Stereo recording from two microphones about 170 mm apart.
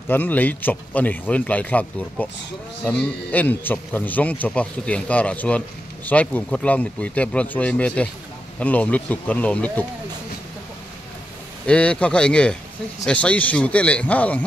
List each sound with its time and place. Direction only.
0.1 s a man's voice: 10° left (ahead or behind)
11.6 s a man's voice: 5° left (ahead or behind)